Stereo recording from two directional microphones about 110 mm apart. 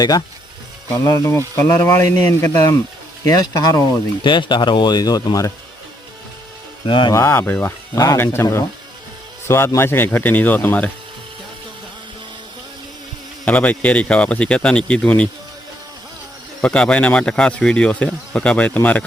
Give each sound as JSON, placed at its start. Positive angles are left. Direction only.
{"t": 0.9, "sound": "speech", "side_deg": 30}
{"t": 3.2, "sound": "speech", "side_deg": 35}
{"t": 6.8, "sound": "speech", "side_deg": 50}
{"t": 7.1, "sound": "speech", "side_deg": 25}
{"t": 7.9, "sound": "speech", "side_deg": 35}
{"t": 8.2, "sound": "speech", "side_deg": 20}
{"t": 13.4, "sound": "speech", "side_deg": 15}
{"t": 16.6, "sound": "speech", "side_deg": 10}